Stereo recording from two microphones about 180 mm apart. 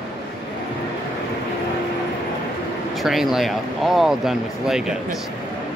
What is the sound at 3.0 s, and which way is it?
Speech, centre (ahead or behind).